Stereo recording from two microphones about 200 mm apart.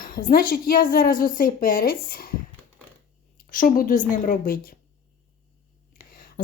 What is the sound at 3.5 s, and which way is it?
A woman's voice, 45° left (ahead or behind).